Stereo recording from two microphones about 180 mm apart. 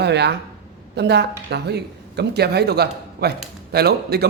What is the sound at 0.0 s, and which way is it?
A man's voice, 70° right (ahead or behind).